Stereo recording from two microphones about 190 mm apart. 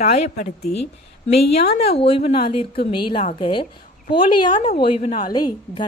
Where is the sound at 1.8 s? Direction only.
30° left (ahead or behind).